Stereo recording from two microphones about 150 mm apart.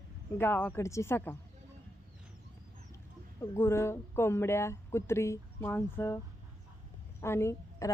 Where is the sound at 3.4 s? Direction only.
15° left (ahead or behind).